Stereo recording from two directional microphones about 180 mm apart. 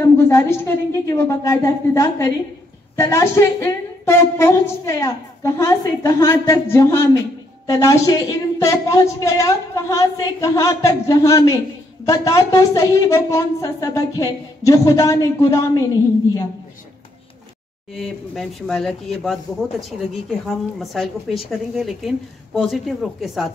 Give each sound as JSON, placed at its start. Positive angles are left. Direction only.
{"t": 0.0, "sound": "a woman's voice", "side_deg": 15}
{"t": 18.0, "sound": "a woman's voice", "side_deg": 0}